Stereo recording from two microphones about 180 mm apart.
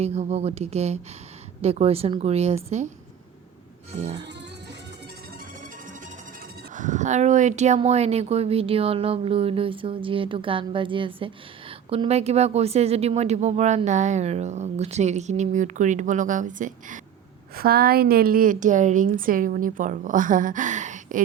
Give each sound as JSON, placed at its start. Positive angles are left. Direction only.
{"t": 0.0, "sound": "speech", "side_deg": -35}
{"t": 3.9, "sound": "speech", "side_deg": -40}
{"t": 6.7, "sound": "speech", "side_deg": -45}
{"t": 17.6, "sound": "a woman's voice", "side_deg": -60}